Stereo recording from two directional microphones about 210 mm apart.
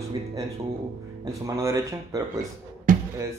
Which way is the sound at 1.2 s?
15° right (ahead or behind).